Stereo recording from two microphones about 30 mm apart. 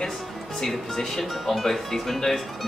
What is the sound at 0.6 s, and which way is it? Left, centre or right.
Speech, centre.